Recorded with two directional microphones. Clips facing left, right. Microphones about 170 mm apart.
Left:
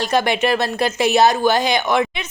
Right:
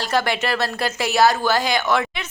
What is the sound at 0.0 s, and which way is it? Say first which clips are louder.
Speech: left 4 dB; 20° left (ahead or behind).